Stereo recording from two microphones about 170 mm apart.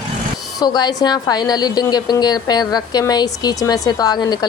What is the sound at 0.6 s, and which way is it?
A woman's voice, 25° left (ahead or behind).